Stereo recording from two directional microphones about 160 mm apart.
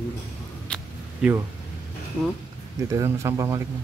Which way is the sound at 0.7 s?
5° left (ahead or behind).